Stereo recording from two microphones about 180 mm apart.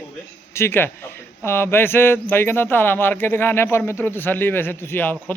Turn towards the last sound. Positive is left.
turn(degrees=10)  # may be behind; listen again after turning